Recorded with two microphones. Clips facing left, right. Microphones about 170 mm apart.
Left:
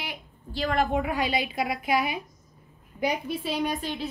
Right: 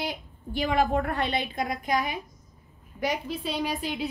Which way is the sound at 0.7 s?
Centre (ahead or behind).